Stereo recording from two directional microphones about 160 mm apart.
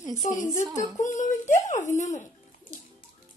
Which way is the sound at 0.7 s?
50° left (ahead or behind).